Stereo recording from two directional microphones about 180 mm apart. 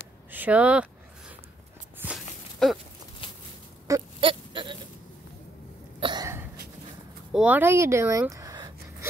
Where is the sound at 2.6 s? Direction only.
Centre (ahead or behind).